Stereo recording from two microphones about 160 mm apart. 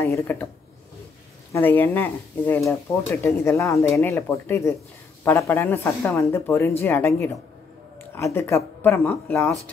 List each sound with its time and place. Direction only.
0.0 s speech: 15° left (ahead or behind)
1.5 s speech: 10° left (ahead or behind)